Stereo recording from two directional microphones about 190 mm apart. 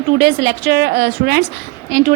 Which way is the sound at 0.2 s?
50° right (ahead or behind).